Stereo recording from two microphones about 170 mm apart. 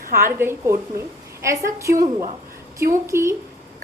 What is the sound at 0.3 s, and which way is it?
A woman's voice, 15° right (ahead or behind).